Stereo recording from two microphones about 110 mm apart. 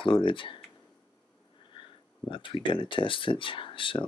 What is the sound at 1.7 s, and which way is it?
Speech, 50° left (ahead or behind).